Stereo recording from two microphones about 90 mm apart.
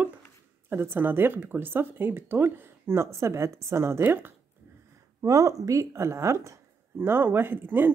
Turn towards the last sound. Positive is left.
turn(degrees=-25)  # may be behind; listen again after turning